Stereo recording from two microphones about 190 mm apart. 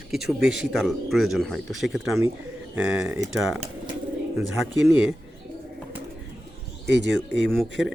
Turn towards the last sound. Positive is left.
turn(degrees=0)  # may be behind; listen again after turning